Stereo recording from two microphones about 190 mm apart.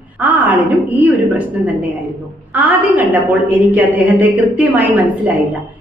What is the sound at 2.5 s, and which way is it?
A woman's voice, 10° right (ahead or behind).